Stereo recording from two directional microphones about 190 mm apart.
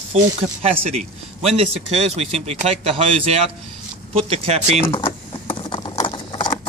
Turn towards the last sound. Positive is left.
turn(degrees=25)  # may be behind; listen again after turning